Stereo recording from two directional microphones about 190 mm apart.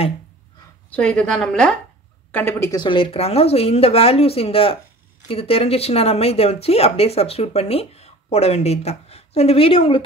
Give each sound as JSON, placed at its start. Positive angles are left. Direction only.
{"t": 0.8, "sound": "a woman's voice", "side_deg": 5}